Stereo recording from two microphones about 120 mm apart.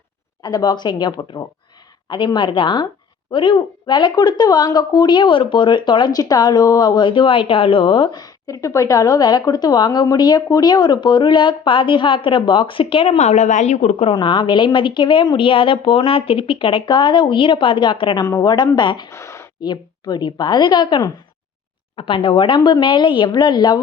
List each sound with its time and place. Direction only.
0.4 s a woman's voice: 35° left (ahead or behind)
13.1 s a woman's voice: 70° left (ahead or behind)
14.1 s a woman's voice: 40° left (ahead or behind)
18.2 s speech: 30° left (ahead or behind)
19.1 s a sound: 25° left (ahead or behind)
19.6 s speech: 35° left (ahead or behind)